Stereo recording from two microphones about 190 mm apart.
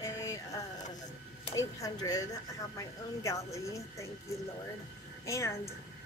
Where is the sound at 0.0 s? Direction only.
15° left (ahead or behind).